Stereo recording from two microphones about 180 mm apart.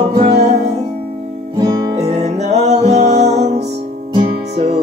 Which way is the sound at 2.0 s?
40° right (ahead or behind).